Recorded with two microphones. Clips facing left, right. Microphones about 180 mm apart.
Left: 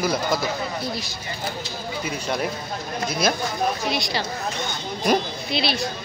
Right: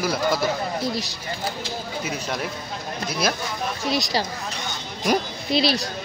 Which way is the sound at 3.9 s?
40° right (ahead or behind).